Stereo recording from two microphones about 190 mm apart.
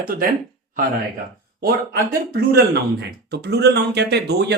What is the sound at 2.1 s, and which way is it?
Speech, 55° right (ahead or behind).